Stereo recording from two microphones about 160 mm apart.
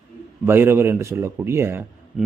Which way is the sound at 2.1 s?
5° right (ahead or behind).